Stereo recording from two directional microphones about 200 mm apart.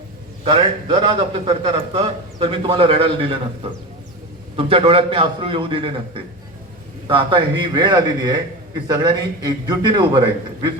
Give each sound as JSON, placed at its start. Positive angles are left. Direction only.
{"t": 0.4, "sound": "a man's voice", "side_deg": -25}
{"t": 7.1, "sound": "a man's voice", "side_deg": -25}